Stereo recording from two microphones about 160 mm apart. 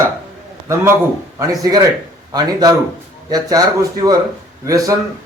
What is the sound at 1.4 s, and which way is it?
Speech, 20° right (ahead or behind).